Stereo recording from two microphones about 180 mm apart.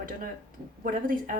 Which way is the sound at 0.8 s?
50° right (ahead or behind).